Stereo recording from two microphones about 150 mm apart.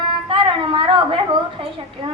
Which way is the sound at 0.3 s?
35° right (ahead or behind).